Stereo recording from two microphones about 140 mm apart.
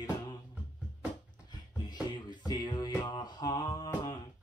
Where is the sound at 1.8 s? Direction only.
30° left (ahead or behind).